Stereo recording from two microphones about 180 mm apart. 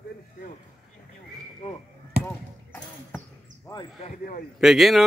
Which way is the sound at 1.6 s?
35° left (ahead or behind).